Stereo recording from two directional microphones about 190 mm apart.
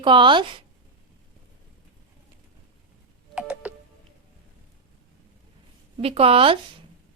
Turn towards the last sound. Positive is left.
turn(degrees=-30)  # may be behind; listen again after turning